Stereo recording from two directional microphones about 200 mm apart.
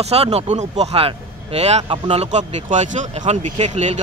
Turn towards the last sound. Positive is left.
turn(degrees=-35)  # may be behind; listen again after turning